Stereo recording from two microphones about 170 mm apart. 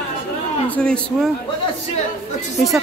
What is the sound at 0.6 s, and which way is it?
Speech, 5° left (ahead or behind).